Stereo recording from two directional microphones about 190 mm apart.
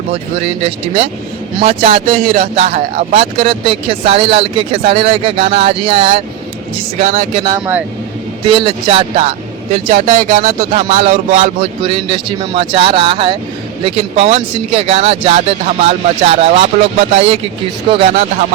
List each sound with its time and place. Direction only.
0.1 s a man's voice: 35° right (ahead or behind)
8.4 s a man's voice: 25° right (ahead or behind)
9.9 s a sound: 45° right (ahead or behind)
10.7 s a man's voice: 35° right (ahead or behind)